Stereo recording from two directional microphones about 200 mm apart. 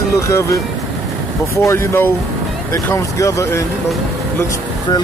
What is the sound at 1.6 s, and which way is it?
Speech, 15° left (ahead or behind).